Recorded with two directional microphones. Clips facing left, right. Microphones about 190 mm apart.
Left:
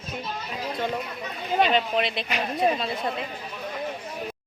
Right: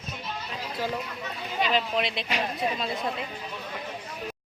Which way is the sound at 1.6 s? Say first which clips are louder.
Left 1 dB; centre (ahead or behind).